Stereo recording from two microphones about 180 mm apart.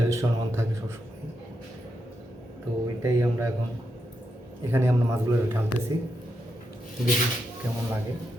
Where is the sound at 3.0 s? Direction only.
15° right (ahead or behind).